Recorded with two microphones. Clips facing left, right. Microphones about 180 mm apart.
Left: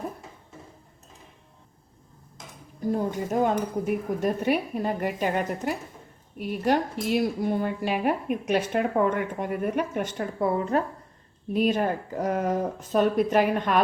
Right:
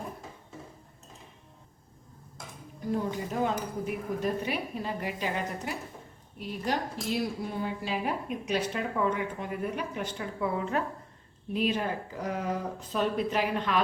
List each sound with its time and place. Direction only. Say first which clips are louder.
2.9 s speech: left 4 dB; 45° left (ahead or behind)